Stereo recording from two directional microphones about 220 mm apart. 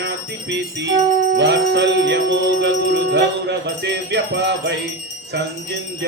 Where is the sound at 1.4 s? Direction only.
50° right (ahead or behind).